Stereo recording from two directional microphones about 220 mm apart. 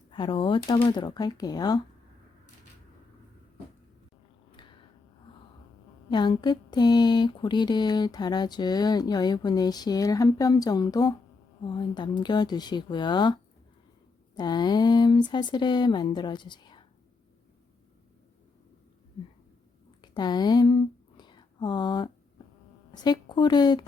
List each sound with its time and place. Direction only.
0.1 s speech: 20° left (ahead or behind)
6.1 s speech: 20° left (ahead or behind)
20.0 s a sound: 20° left (ahead or behind)
23.0 s speech: 20° left (ahead or behind)